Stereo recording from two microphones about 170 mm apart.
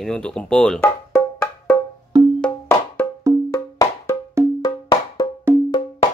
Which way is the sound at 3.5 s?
20° left (ahead or behind).